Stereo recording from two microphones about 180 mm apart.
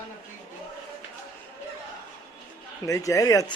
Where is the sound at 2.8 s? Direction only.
20° left (ahead or behind).